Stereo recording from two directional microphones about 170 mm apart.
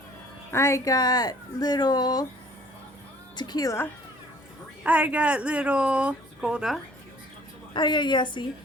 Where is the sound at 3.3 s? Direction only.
25° left (ahead or behind).